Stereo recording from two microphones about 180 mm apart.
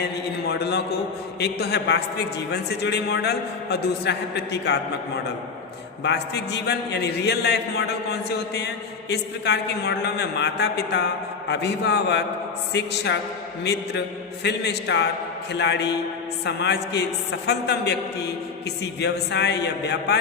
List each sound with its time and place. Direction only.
0.4 s a man's voice: 65° left (ahead or behind)
14.4 s a man's voice: 70° left (ahead or behind)
18.9 s a man's voice: 70° left (ahead or behind)